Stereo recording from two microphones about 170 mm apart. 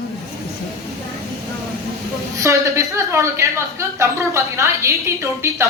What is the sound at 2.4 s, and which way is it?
A woman's voice, 20° right (ahead or behind).